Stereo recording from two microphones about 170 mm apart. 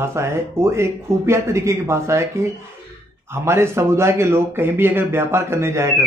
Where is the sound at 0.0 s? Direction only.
15° right (ahead or behind).